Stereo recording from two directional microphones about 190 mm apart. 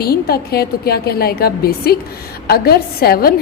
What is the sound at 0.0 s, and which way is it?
A woman's voice, 55° left (ahead or behind).